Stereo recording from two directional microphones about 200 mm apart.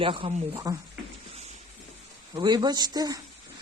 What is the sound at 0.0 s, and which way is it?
Speech, 25° right (ahead or behind).